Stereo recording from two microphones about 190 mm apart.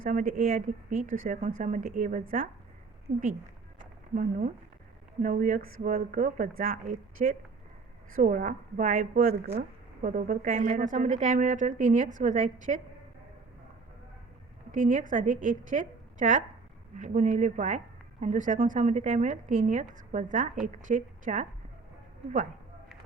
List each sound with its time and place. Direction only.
0.0 s a woman's voice: 45° right (ahead or behind)
14.7 s a woman's voice: 40° right (ahead or behind)